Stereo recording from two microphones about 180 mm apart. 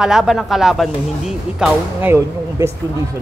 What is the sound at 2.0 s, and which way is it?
Speech, 15° right (ahead or behind).